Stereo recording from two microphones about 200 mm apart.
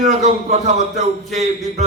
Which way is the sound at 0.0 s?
35° right (ahead or behind).